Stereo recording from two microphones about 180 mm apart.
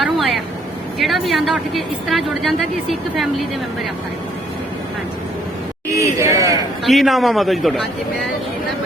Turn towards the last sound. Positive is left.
turn(degrees=0)  # may be behind; listen again after turning